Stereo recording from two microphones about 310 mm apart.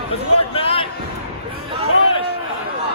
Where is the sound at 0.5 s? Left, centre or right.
Centre.